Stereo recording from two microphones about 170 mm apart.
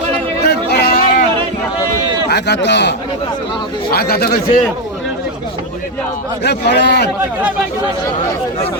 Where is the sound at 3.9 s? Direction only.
65° left (ahead or behind).